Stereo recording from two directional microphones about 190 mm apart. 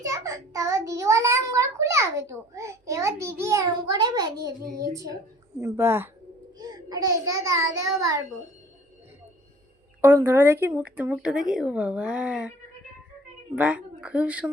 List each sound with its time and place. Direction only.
0.0 s a child's voice: 15° right (ahead or behind)
10.0 s speech: 10° right (ahead or behind)
13.6 s speech: 5° right (ahead or behind)